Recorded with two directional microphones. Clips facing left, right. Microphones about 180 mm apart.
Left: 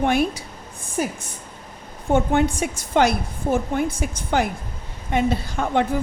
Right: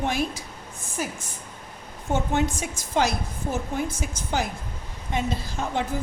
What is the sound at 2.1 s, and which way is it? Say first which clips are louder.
A woman's voice: left 6 dB; 55° left (ahead or behind).